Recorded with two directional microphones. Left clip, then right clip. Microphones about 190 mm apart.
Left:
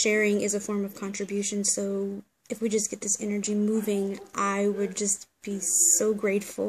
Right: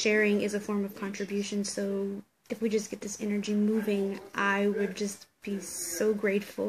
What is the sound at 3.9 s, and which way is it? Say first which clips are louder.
Speech: left 2 dB; 15° left (ahead or behind).